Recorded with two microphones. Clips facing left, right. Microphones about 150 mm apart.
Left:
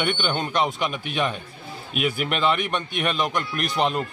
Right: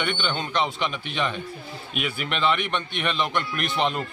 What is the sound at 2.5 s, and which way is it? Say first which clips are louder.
Speech: left 1 dB; 40° left (ahead or behind).